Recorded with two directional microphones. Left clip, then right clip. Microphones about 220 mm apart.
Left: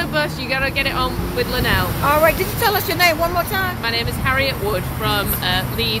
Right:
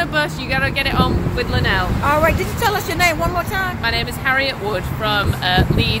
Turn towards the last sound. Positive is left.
turn(degrees=-20)  # may be behind; listen again after turning